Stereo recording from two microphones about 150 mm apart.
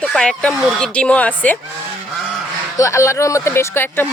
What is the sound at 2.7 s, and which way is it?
Speech, 20° left (ahead or behind).